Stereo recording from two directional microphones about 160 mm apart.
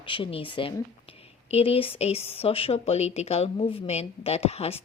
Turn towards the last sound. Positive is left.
turn(degrees=40)  # may be behind; listen again after turning